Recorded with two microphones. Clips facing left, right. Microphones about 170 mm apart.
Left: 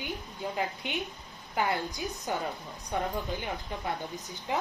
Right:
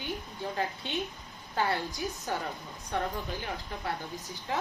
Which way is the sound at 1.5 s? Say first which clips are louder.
Even; 20° left (ahead or behind).